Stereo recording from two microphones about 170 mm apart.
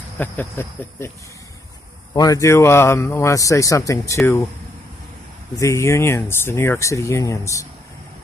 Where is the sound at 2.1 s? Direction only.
20° left (ahead or behind).